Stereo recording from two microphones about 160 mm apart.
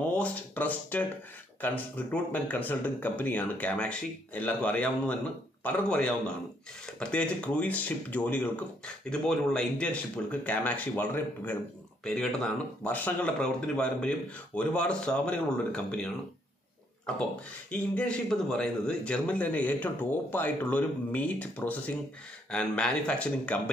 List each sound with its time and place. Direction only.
0.0 s speech: 10° left (ahead or behind)
17.6 s speech: 5° left (ahead or behind)